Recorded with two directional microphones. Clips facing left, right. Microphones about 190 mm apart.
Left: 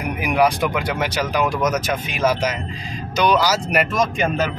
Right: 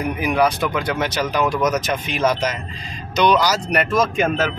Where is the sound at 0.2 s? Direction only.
10° left (ahead or behind).